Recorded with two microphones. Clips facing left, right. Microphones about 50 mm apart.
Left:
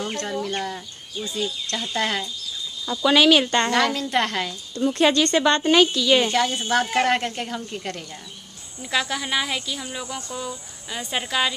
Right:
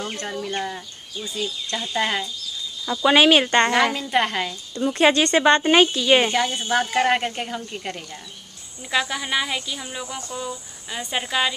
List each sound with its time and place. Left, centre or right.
0.0 s a woman's voice: centre; by 6.2 s right
6.2 s speech: centre